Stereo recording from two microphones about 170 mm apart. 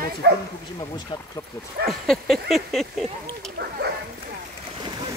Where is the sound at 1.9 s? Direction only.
Centre (ahead or behind).